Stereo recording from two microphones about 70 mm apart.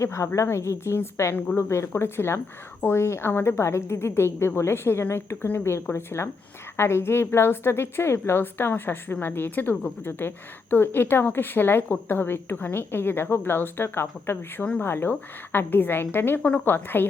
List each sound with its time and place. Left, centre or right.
0.0 s a woman's voice: left